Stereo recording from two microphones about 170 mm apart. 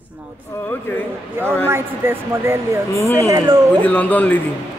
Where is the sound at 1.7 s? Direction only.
15° right (ahead or behind).